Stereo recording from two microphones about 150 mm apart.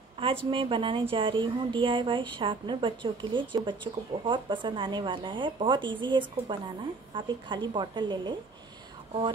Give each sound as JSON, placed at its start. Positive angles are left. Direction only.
{"t": 0.2, "sound": "speech", "side_deg": -35}